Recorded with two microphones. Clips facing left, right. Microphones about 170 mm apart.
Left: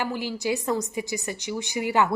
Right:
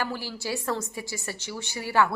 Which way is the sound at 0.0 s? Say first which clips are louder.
Left 4 dB; 15° left (ahead or behind).